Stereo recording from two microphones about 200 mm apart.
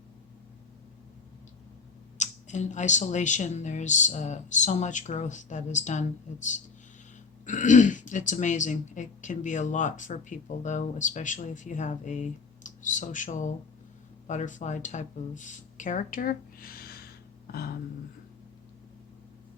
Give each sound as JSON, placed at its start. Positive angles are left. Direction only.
{"t": 2.1, "sound": "speech", "side_deg": 35}